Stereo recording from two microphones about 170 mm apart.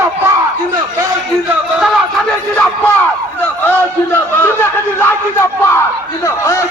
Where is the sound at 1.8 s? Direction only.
5° left (ahead or behind).